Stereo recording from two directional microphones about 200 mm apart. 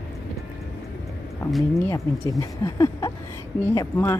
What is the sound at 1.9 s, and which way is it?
Speech, 15° left (ahead or behind).